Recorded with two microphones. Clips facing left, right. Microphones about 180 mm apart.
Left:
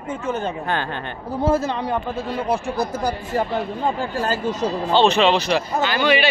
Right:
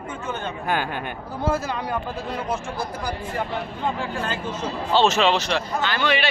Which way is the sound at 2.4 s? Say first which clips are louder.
Left 5 dB; 35° left (ahead or behind).